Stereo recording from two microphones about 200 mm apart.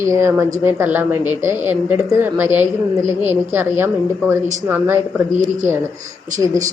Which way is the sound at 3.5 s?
10° right (ahead or behind).